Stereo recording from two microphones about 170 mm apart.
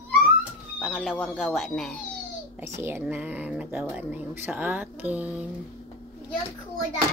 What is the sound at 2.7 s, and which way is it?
Speech, 15° right (ahead or behind).